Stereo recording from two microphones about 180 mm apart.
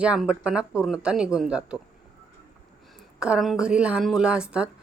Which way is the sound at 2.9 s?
5° right (ahead or behind).